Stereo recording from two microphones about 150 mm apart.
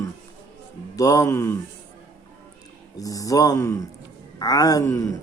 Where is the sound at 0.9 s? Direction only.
25° left (ahead or behind).